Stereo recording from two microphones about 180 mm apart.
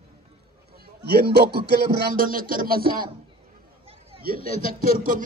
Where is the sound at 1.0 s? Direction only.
65° right (ahead or behind).